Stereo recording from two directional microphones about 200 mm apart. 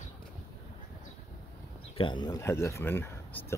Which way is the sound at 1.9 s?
25° left (ahead or behind).